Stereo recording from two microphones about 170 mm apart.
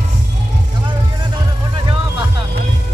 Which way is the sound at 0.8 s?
25° right (ahead or behind).